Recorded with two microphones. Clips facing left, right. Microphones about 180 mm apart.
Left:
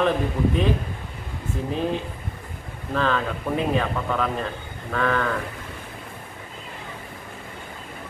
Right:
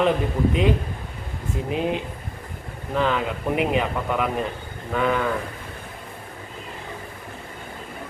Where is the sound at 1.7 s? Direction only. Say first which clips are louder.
Right 1 dB; 15° right (ahead or behind).